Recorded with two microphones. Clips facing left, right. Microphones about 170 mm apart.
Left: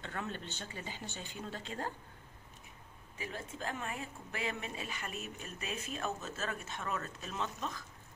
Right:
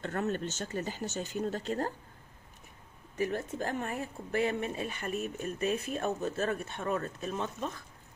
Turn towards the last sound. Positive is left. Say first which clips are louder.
# right 5 dB
turn(degrees=-50)  # may be behind; listen again after turning